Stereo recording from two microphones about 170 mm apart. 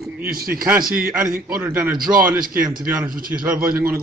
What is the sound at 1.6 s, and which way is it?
Speech, 15° right (ahead or behind).